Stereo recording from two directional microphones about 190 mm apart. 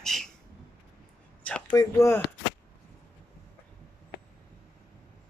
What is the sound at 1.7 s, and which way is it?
Speech, 20° left (ahead or behind).